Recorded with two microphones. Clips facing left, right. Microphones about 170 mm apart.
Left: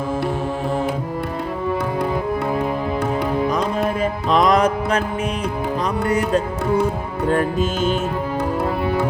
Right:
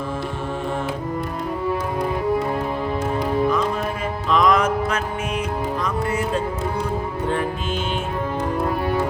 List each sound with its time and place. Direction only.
4.3 s music: 35° left (ahead or behind)